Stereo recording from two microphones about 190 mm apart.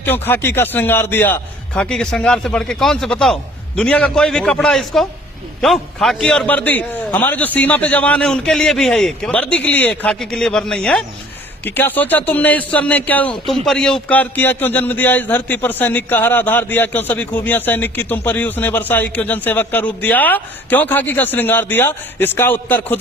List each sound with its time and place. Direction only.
0.0 s a man's voice: 10° left (ahead or behind)